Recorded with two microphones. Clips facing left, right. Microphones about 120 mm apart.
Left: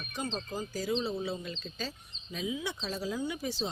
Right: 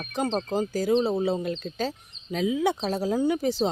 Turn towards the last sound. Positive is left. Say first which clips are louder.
# right 11 dB
turn(degrees=-55)  # may be behind; listen again after turning